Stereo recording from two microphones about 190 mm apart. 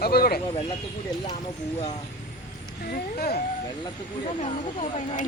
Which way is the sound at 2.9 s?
55° left (ahead or behind).